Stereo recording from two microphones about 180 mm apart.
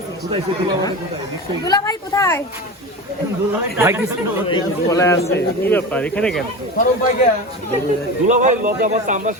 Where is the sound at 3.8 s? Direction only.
15° right (ahead or behind).